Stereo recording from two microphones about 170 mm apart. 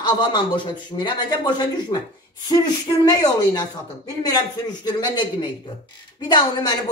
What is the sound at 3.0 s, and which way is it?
A woman's voice, 25° left (ahead or behind).